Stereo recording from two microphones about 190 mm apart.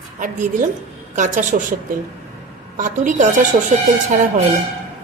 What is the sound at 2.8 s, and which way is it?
Speech, 40° right (ahead or behind).